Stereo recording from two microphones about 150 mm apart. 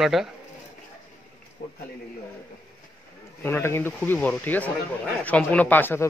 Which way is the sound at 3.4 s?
15° left (ahead or behind).